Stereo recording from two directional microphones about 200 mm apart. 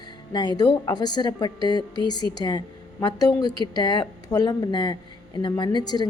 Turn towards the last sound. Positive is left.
turn(degrees=20)  # may be behind; listen again after turning